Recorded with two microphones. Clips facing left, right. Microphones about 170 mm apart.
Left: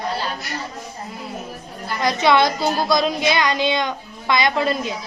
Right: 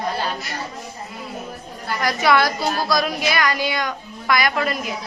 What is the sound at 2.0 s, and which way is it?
A woman's voice, 20° left (ahead or behind).